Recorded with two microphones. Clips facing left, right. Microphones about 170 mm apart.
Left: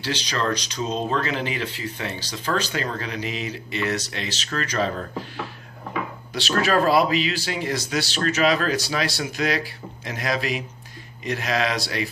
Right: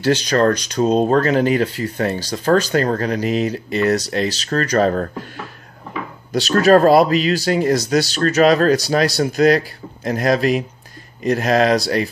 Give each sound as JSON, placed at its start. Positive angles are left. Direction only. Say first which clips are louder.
{"t": 0.0, "sound": "speech", "louder": "right 11 dB", "side_deg": -50}
{"t": 6.3, "sound": "speech", "louder": "right 9 dB", "side_deg": -40}